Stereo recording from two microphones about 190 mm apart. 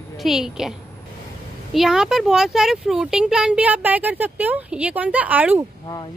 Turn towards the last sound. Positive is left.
turn(degrees=-10)  # may be behind; listen again after turning